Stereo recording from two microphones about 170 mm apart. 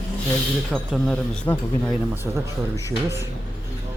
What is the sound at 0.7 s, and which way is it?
Speech, centre (ahead or behind).